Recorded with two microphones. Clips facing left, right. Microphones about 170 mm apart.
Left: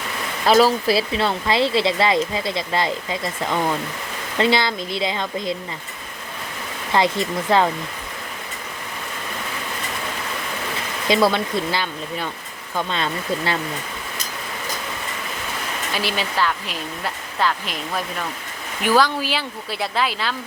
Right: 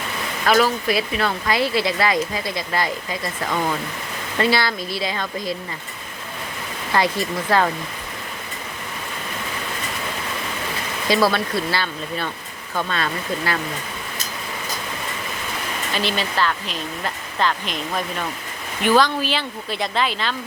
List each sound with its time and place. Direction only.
0.4 s speech: 30° left (ahead or behind)
6.9 s speech: 20° left (ahead or behind)
11.1 s speech: 20° left (ahead or behind)
16.0 s speech: 10° left (ahead or behind)